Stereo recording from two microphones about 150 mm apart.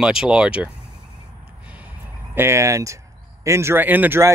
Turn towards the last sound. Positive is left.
turn(degrees=-15)  # may be behind; listen again after turning